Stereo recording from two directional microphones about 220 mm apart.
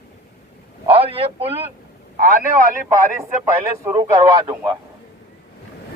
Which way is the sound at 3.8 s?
20° right (ahead or behind).